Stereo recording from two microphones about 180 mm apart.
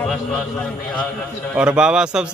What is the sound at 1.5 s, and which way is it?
Speech, 5° right (ahead or behind).